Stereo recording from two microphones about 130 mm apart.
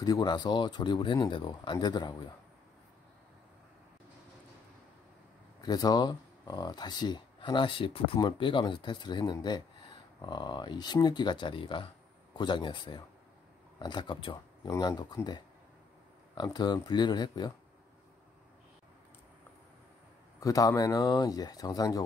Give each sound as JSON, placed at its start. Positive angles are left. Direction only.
{"t": 0.0, "sound": "speech", "side_deg": 35}
{"t": 5.6, "sound": "speech", "side_deg": 30}
{"t": 20.3, "sound": "speech", "side_deg": 25}